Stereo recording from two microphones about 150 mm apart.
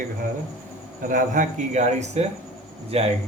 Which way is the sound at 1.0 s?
60° right (ahead or behind).